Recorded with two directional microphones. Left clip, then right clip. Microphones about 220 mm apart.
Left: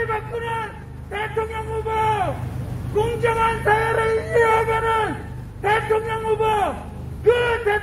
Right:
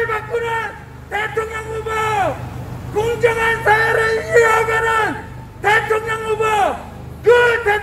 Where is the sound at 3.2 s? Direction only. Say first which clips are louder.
Right 5 dB; 35° right (ahead or behind).